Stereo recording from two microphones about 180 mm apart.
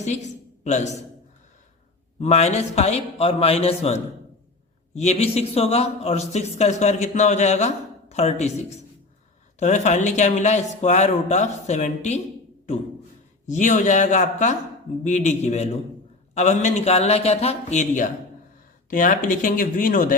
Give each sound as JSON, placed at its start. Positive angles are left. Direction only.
{"t": 0.0, "sound": "a woman's voice", "side_deg": 40}
{"t": 2.1, "sound": "a man's voice", "side_deg": 40}
{"t": 13.5, "sound": "a man's voice", "side_deg": 45}